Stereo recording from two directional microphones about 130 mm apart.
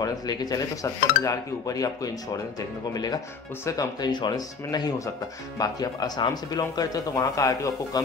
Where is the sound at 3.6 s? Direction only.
25° left (ahead or behind).